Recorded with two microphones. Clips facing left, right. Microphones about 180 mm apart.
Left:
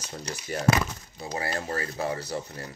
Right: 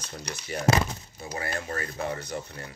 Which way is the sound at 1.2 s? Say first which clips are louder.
Left 2 dB; 35° left (ahead or behind).